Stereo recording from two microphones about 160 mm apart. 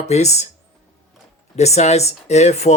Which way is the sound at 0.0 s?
45° left (ahead or behind).